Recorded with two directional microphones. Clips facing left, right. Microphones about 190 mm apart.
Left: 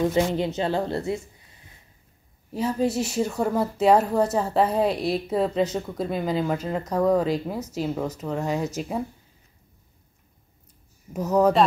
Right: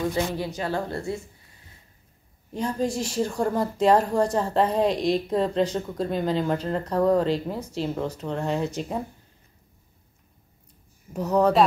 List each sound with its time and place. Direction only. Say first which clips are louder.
0.1 s a woman's voice: left 4 dB; 20° left (ahead or behind)
2.5 s speech: left 2 dB; 5° left (ahead or behind)
11.1 s speech: left 1 dB; centre (ahead or behind)